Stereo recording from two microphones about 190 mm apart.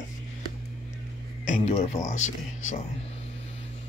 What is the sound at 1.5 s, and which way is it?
A man's voice, 35° left (ahead or behind).